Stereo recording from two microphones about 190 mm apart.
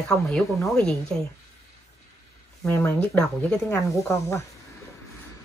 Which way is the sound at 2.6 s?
10° left (ahead or behind).